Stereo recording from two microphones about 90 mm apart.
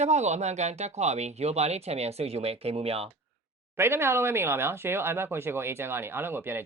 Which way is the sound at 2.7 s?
90° right.